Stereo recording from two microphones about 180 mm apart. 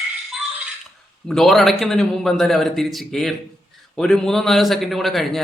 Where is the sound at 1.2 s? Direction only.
Centre (ahead or behind).